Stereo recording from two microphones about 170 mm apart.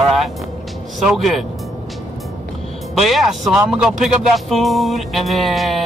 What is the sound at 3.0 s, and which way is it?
Music, centre (ahead or behind).